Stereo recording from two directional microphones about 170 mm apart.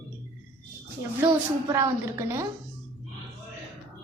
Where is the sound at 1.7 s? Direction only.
20° right (ahead or behind).